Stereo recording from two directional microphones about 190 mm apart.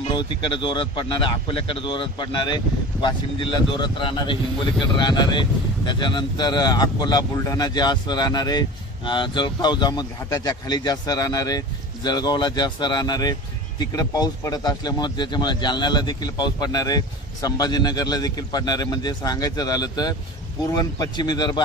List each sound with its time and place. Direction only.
0.1 s speech: 25° left (ahead or behind)